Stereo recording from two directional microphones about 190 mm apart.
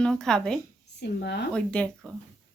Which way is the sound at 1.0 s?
60° left (ahead or behind).